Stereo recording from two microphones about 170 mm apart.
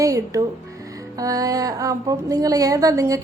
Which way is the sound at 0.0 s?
20° right (ahead or behind).